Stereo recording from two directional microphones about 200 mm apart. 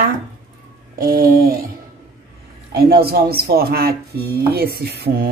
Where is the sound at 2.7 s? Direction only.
50° right (ahead or behind).